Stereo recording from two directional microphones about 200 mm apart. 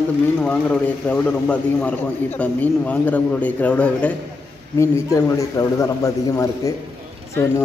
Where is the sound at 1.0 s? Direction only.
5° left (ahead or behind).